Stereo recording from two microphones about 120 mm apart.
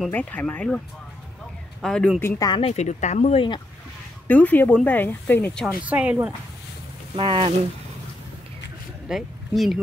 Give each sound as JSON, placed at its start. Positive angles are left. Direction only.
{"t": 0.1, "sound": "speech", "side_deg": 15}
{"t": 1.8, "sound": "a man's voice", "side_deg": 5}
{"t": 2.1, "sound": "speech", "side_deg": 20}
{"t": 2.6, "sound": "speech", "side_deg": 65}
{"t": 4.3, "sound": "speech", "side_deg": 15}
{"t": 5.9, "sound": "speech", "side_deg": -10}
{"t": 7.2, "sound": "speech", "side_deg": -50}
{"t": 9.1, "sound": "speech", "side_deg": 0}